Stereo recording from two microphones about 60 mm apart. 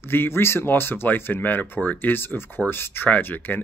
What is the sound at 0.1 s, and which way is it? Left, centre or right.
Speech, left.